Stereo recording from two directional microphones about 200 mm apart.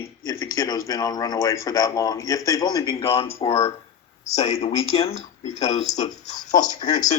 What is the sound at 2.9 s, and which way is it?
Music, 30° left (ahead or behind).